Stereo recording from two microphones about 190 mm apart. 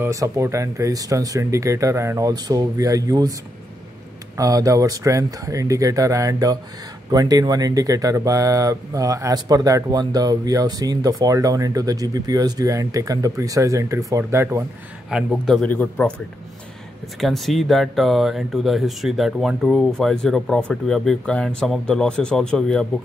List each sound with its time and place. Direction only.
0.0 s speech: 15° right (ahead or behind)
4.4 s speech: 20° right (ahead or behind)
15.0 s speech: centre (ahead or behind)
17.2 s speech: centre (ahead or behind)